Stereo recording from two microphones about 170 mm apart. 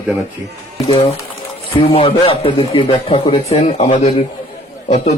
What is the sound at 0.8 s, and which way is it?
A man's voice, 35° left (ahead or behind).